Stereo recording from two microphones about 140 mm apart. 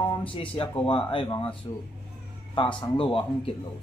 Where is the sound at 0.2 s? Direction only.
40° left (ahead or behind).